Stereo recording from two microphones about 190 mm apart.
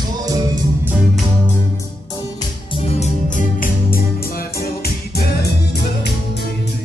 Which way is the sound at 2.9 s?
35° left (ahead or behind).